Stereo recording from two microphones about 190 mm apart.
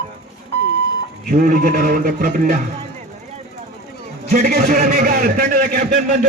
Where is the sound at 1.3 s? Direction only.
50° right (ahead or behind).